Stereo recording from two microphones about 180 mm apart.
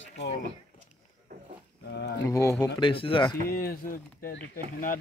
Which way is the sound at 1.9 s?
65° left (ahead or behind).